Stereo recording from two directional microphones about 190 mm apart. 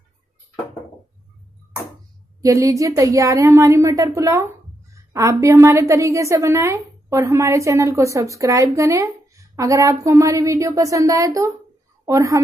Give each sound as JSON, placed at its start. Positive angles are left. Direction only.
{"t": 2.4, "sound": "a woman's voice", "side_deg": -15}